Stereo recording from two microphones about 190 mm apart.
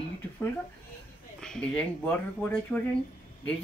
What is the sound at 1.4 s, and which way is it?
Speech, 5° left (ahead or behind).